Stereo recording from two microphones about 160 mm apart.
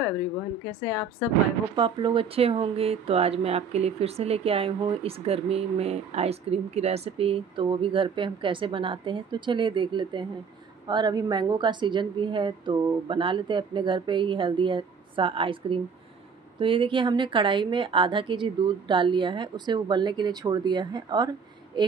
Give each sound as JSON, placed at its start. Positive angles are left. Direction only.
{"t": 1.8, "sound": "a woman's voice", "side_deg": -30}